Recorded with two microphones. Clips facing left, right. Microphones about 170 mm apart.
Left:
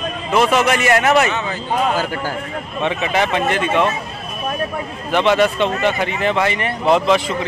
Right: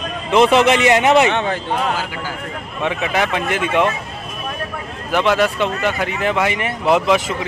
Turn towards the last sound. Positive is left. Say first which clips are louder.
# left 1 dB
turn(degrees=-10)  # may be behind; listen again after turning